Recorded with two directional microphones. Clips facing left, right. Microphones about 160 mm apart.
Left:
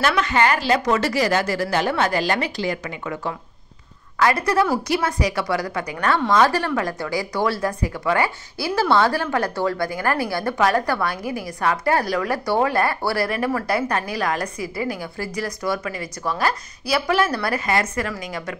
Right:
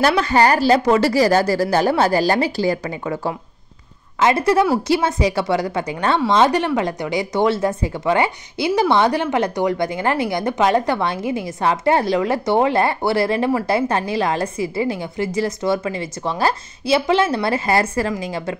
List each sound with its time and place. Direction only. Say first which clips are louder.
0.0 s a woman's voice: right 4 dB; 35° right (ahead or behind)
4.2 s a woman's voice: right 3 dB; 25° right (ahead or behind)